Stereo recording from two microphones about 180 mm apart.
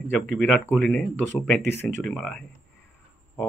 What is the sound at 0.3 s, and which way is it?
A man's voice, 10° left (ahead or behind).